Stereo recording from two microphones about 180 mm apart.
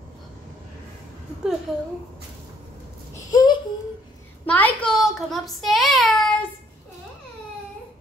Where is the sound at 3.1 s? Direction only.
20° left (ahead or behind).